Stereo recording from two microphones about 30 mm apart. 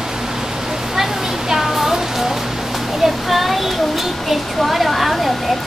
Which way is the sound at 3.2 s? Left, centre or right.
Centre.